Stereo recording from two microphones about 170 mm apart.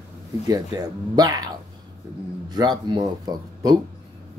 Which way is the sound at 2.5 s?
25° right (ahead or behind).